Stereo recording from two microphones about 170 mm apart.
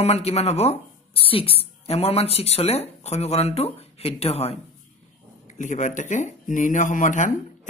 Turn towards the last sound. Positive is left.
turn(degrees=50)  # may be behind; listen again after turning